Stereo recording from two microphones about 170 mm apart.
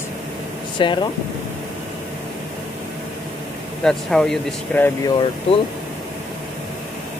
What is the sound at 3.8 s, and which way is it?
Speech, 5° left (ahead or behind).